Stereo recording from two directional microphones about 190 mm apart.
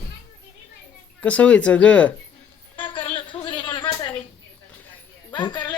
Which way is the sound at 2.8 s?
25° left (ahead or behind).